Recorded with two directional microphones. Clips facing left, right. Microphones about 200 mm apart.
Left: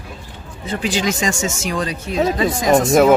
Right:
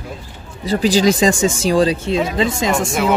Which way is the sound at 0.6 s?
35° right (ahead or behind).